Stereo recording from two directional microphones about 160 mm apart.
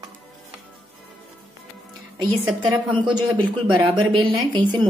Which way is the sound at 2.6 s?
30° right (ahead or behind).